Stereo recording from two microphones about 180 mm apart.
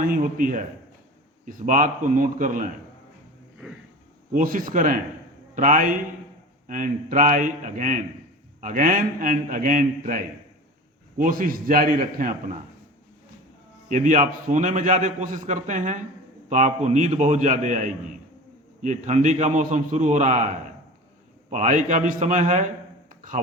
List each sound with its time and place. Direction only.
0.0 s a man's voice: 50° right (ahead or behind)
4.3 s a man's voice: 50° right (ahead or behind)
13.8 s a man's voice: 45° right (ahead or behind)